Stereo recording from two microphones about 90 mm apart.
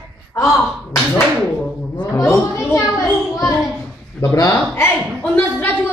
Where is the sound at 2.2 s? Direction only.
30° left (ahead or behind).